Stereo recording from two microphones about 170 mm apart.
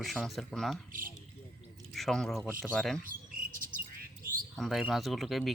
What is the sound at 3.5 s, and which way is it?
Bird, 55° right (ahead or behind).